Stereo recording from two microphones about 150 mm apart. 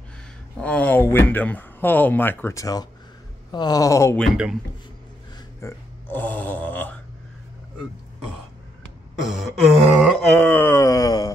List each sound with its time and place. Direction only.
0.6 s speech: 10° left (ahead or behind); by 2.9 s 25° left (ahead or behind)
3.5 s wail: 25° left (ahead or behind)
5.6 s speech: 15° left (ahead or behind)
9.2 s a sound: centre (ahead or behind)
10.3 s wail: 15° left (ahead or behind)